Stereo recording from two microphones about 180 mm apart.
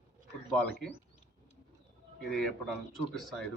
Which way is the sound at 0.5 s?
5° left (ahead or behind).